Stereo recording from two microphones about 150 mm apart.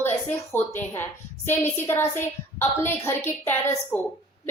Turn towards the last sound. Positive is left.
turn(degrees=15)  # may be behind; listen again after turning